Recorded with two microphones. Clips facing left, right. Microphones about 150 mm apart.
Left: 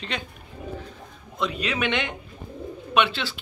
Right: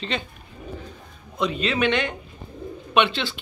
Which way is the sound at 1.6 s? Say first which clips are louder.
Right 5 dB; 20° left (ahead or behind).